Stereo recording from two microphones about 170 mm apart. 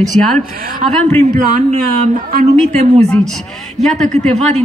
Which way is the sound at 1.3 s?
50° right (ahead or behind).